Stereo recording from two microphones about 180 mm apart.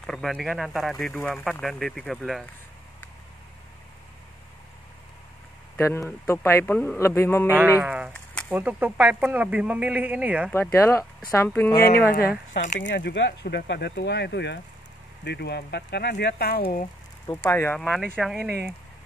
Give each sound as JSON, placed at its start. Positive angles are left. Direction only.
{"t": 0.0, "sound": "speech", "side_deg": 5}
{"t": 5.8, "sound": "speech", "side_deg": 15}
{"t": 7.5, "sound": "speech", "side_deg": -5}
{"t": 10.5, "sound": "speech", "side_deg": 15}
{"t": 11.7, "sound": "speech", "side_deg": 55}
{"t": 17.3, "sound": "speech", "side_deg": 15}